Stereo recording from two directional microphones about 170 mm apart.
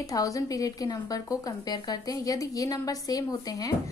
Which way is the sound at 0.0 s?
20° left (ahead or behind).